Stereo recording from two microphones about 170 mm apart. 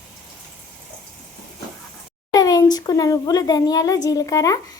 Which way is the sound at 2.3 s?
20° left (ahead or behind).